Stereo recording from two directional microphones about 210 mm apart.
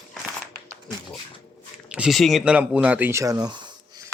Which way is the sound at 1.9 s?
Centre (ahead or behind).